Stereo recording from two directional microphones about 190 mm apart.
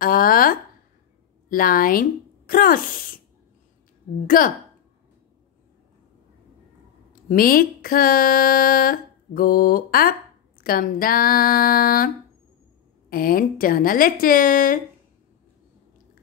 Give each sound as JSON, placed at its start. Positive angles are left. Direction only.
{"t": 0.0, "sound": "a sound", "side_deg": 50}
{"t": 1.5, "sound": "speech", "side_deg": 50}
{"t": 4.4, "sound": "speech", "side_deg": 45}
{"t": 7.1, "sound": "speech", "side_deg": 50}
{"t": 13.1, "sound": "speech", "side_deg": 50}